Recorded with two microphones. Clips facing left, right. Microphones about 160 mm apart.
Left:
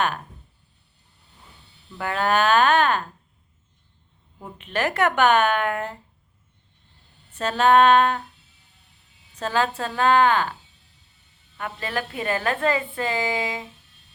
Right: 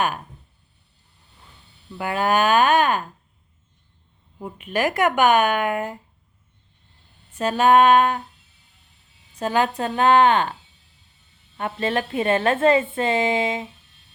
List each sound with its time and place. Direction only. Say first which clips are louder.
2.0 s speech: right 1 dB; 10° right (ahead or behind)
4.4 s speech: right 3 dB; 10° right (ahead or behind)
7.3 s speech: right 1 dB; 10° right (ahead or behind)
9.4 s a woman's voice: right 3 dB; 15° right (ahead or behind)